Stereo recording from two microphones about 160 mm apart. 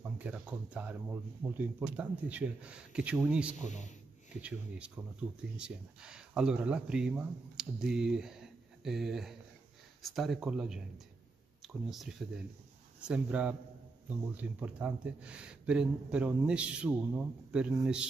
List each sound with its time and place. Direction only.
0.0 s speech: 10° right (ahead or behind)
3.6 s a man's voice: 50° left (ahead or behind)
4.4 s speech: 10° right (ahead or behind)